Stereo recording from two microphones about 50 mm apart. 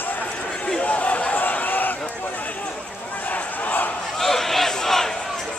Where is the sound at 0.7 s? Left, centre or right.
Left.